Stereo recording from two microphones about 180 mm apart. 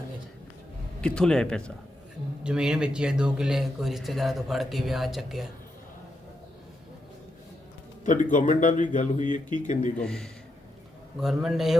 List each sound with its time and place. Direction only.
1.0 s a man's voice: 5° left (ahead or behind)
8.0 s speech: 45° left (ahead or behind)
10.0 s a man's voice: 5° left (ahead or behind)